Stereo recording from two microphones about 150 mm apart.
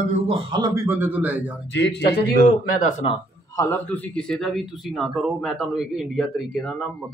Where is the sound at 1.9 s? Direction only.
90° left.